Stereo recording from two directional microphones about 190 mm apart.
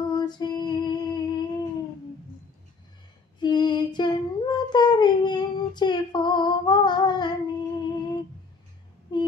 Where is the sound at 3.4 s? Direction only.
25° left (ahead or behind).